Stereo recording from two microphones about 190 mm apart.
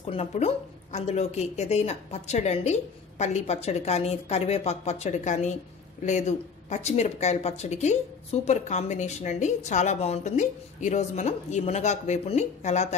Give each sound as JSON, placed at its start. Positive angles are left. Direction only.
{"t": 0.0, "sound": "speech", "side_deg": 30}